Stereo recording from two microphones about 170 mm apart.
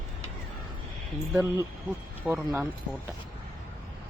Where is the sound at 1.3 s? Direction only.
15° right (ahead or behind).